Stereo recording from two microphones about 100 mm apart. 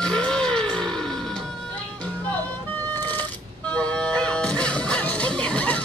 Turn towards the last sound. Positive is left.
turn(degrees=15)  # may be behind; listen again after turning